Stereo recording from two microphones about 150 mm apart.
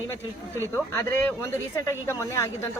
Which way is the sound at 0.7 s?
15° left (ahead or behind).